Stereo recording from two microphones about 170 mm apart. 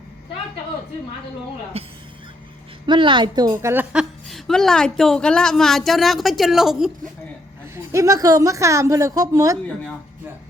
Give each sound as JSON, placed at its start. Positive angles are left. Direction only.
{"t": 1.7, "sound": "a woman's voice", "side_deg": -35}
{"t": 4.3, "sound": "a woman's voice", "side_deg": 0}
{"t": 7.9, "sound": "a woman's voice", "side_deg": -20}